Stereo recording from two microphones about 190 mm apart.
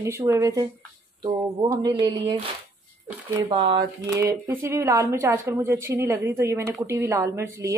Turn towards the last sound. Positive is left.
turn(degrees=-15)  # may be behind; listen again after turning